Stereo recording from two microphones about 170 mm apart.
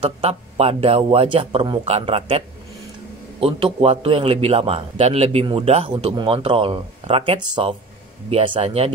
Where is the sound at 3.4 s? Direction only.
35° right (ahead or behind).